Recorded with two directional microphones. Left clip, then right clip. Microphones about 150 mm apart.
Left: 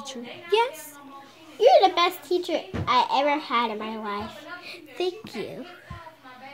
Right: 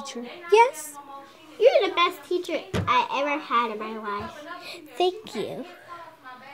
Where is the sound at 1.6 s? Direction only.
30° left (ahead or behind).